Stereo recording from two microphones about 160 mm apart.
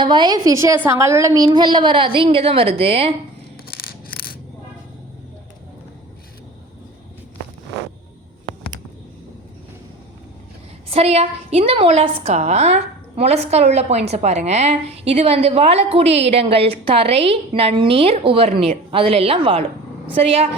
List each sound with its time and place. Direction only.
0.0 s a woman's voice: 30° right (ahead or behind)
10.9 s a woman's voice: 40° right (ahead or behind)